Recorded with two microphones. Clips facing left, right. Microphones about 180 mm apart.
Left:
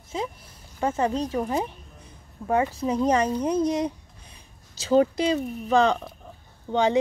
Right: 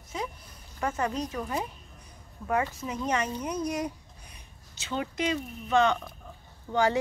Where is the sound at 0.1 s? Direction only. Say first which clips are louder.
Left 5 dB; 30° left (ahead or behind).